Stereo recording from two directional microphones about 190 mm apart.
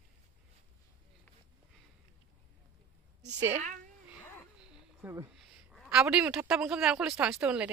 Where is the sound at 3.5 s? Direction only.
40° right (ahead or behind).